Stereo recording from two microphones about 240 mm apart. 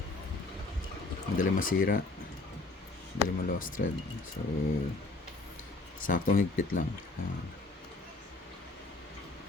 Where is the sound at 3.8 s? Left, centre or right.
Left.